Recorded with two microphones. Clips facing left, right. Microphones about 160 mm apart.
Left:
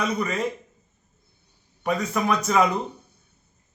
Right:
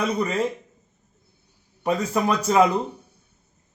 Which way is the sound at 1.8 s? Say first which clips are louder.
Right 2 dB; 30° right (ahead or behind).